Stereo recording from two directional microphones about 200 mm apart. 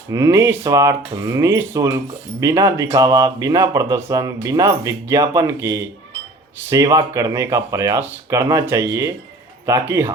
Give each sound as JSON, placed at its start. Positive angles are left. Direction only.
{"t": 0.1, "sound": "speech", "side_deg": -15}